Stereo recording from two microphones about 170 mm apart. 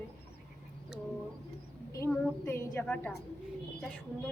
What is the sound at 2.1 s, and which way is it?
A woman's voice, 5° left (ahead or behind).